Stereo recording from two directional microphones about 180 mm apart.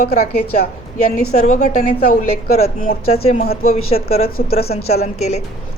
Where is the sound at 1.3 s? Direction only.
40° left (ahead or behind).